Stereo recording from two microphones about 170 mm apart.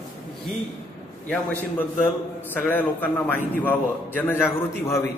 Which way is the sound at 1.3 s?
10° left (ahead or behind).